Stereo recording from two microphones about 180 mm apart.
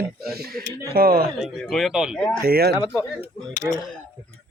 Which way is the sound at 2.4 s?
60° right (ahead or behind).